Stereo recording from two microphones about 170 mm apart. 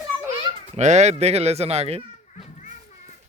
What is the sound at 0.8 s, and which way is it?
Speech, 45° right (ahead or behind).